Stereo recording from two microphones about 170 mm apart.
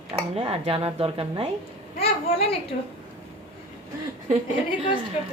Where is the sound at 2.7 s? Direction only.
50° left (ahead or behind).